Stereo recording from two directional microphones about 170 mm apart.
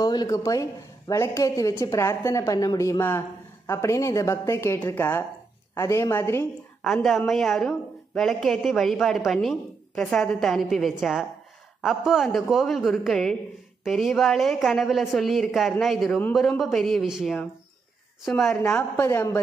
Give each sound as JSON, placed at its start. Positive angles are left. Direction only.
{"t": 0.0, "sound": "a woman's voice", "side_deg": 25}
{"t": 6.8, "sound": "a woman's voice", "side_deg": 0}